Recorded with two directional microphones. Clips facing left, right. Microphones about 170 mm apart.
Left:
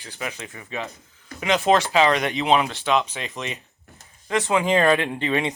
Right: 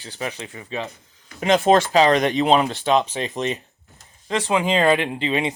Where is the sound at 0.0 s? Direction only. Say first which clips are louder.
Right 3 dB; 35° right (ahead or behind).